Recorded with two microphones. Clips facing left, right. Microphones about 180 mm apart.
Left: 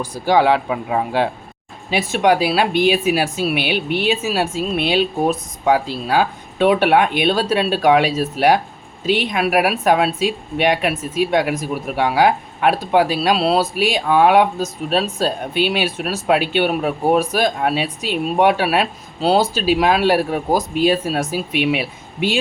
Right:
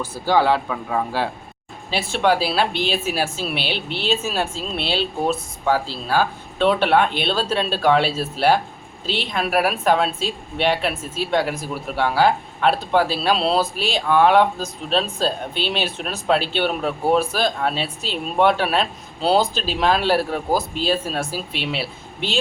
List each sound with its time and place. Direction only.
0.0 s speech: 15° left (ahead or behind)